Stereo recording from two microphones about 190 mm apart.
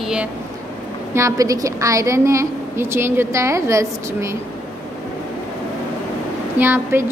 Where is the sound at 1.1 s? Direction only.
15° right (ahead or behind).